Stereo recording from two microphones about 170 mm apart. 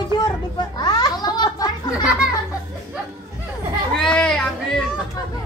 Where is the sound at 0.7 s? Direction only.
25° left (ahead or behind).